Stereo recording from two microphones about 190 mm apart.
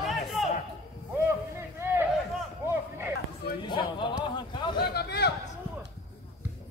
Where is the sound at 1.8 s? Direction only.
15° right (ahead or behind).